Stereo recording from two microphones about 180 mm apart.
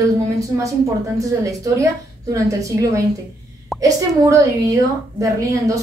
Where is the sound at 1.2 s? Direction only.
20° right (ahead or behind).